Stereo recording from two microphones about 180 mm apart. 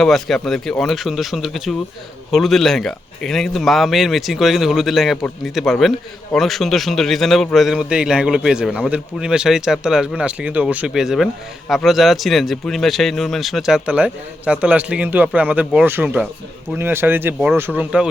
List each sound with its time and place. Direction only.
0.0 s speech: centre (ahead or behind)
16.7 s speech: 15° right (ahead or behind)